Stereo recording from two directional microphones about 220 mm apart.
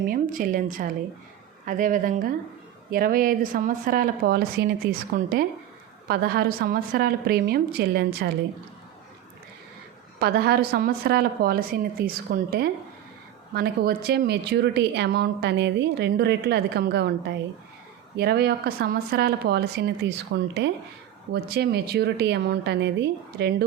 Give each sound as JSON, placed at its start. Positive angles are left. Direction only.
{"t": 0.1, "sound": "a woman's voice", "side_deg": -40}
{"t": 10.2, "sound": "a woman's voice", "side_deg": -45}
{"t": 18.2, "sound": "a woman's voice", "side_deg": -45}